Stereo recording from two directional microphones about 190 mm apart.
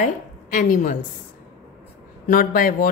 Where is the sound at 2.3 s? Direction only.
50° left (ahead or behind).